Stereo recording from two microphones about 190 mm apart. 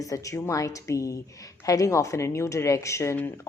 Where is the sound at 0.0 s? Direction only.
15° left (ahead or behind).